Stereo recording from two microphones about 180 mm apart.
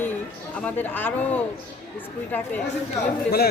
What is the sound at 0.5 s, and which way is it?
Speech, 10° left (ahead or behind).